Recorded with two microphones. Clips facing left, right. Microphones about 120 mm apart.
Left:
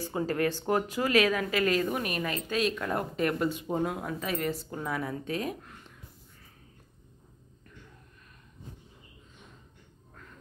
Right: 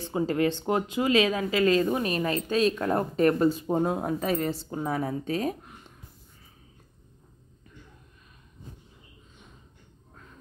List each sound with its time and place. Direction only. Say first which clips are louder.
0.0 s speech: right 3 dB; 20° right (ahead or behind)